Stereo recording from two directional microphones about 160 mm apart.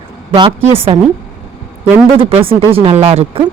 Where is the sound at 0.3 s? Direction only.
30° right (ahead or behind).